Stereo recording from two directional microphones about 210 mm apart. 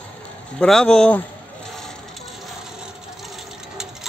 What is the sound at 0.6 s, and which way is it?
Speech, 5° left (ahead or behind).